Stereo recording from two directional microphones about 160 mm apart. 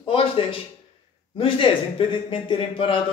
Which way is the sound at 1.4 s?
35° left (ahead or behind).